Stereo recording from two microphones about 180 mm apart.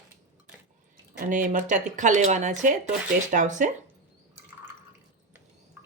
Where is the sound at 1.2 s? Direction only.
45° right (ahead or behind).